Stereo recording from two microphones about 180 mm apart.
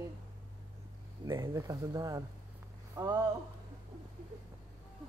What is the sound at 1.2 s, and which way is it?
Speech, 20° right (ahead or behind).